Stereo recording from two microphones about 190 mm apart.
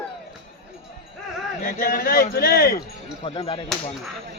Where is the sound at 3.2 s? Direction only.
30° left (ahead or behind).